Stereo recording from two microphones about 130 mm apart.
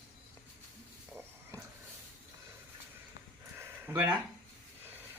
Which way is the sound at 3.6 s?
15° right (ahead or behind).